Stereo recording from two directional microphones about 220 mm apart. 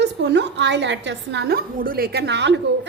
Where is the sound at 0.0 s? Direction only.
50° right (ahead or behind).